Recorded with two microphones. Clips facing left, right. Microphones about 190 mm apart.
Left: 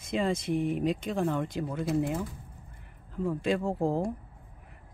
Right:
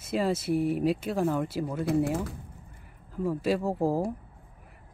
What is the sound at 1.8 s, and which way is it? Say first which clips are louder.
Speech: right 3 dB; 65° right (ahead or behind).